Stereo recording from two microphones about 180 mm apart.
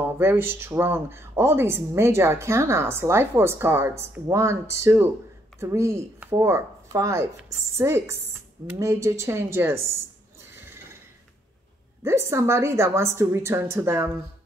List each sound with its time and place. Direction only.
0.0 s speech: 10° right (ahead or behind)
10.5 s neigh: 10° right (ahead or behind)
12.0 s speech: 15° right (ahead or behind)